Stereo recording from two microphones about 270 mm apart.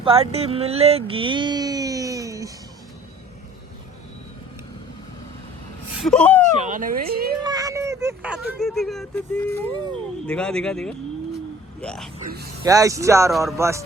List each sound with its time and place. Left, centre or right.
0.0 s a sound: right
6.0 s speech: centre
6.4 s speech: right
7.4 s speech: centre
12.6 s speech: centre